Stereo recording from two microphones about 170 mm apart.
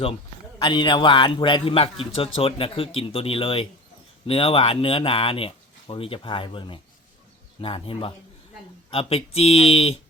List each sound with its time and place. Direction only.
0.6 s a man's voice: 30° left (ahead or behind)